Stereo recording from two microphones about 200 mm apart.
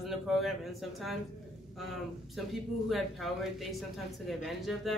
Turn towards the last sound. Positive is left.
turn(degrees=0)  # may be behind; listen again after turning